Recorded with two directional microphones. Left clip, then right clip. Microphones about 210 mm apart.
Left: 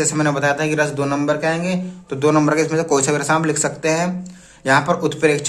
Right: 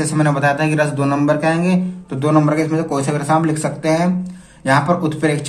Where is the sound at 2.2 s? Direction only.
20° left (ahead or behind).